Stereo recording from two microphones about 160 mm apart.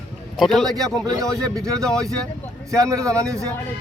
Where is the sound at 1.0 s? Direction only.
25° right (ahead or behind).